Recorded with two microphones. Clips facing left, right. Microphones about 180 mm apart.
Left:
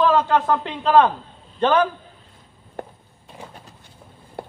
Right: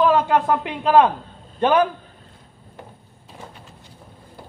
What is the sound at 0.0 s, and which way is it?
A man's voice, 10° right (ahead or behind).